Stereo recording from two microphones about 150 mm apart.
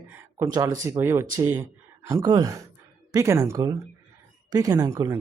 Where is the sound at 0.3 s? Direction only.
20° right (ahead or behind).